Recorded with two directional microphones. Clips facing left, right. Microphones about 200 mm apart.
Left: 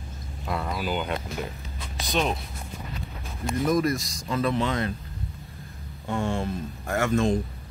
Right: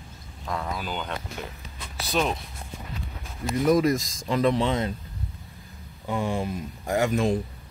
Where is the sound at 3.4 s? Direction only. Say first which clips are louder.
Right 3 dB; 10° right (ahead or behind).